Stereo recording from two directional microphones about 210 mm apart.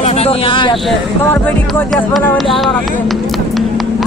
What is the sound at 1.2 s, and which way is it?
Speech, 10° left (ahead or behind).